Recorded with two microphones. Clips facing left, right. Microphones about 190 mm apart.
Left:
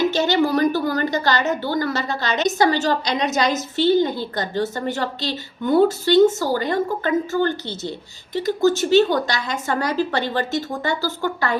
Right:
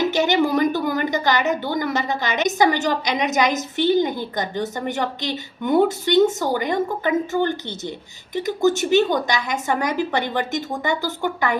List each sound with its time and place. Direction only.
0.0 s a woman's voice: 20° right (ahead or behind)